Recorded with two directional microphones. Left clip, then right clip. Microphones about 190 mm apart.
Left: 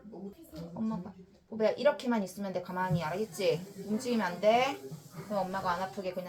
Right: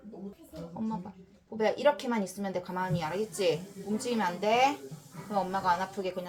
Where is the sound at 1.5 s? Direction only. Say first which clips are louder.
Right 1 dB; 30° right (ahead or behind).